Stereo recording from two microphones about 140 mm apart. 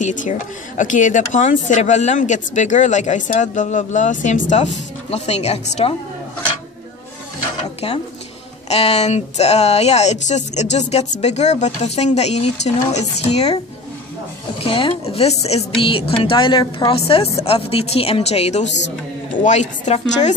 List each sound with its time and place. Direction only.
0.0 s speech: 60° left (ahead or behind)
8.6 s speech: 45° left (ahead or behind)
14.6 s speech: 40° left (ahead or behind); by 20.3 s 55° left (ahead or behind)